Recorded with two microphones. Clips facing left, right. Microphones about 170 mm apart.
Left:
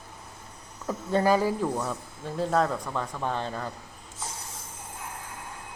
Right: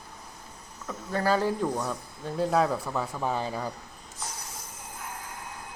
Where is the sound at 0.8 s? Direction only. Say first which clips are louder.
Left 5 dB; 25° left (ahead or behind).